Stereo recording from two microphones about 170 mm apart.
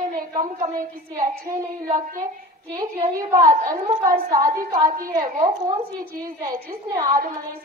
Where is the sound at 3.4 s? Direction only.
45° right (ahead or behind).